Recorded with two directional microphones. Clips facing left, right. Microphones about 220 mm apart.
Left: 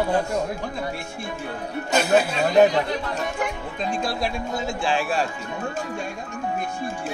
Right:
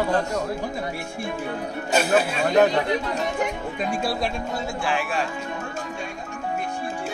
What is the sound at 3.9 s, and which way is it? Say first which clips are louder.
Speech: even; 5° right (ahead or behind).